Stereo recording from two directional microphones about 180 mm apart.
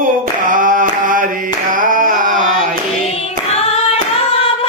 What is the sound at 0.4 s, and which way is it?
Mantra, 50° right (ahead or behind).